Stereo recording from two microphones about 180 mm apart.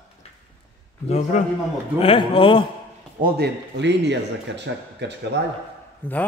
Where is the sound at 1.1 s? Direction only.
45° left (ahead or behind).